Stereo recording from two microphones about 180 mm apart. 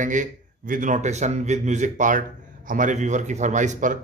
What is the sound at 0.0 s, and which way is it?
A man's voice, 45° right (ahead or behind).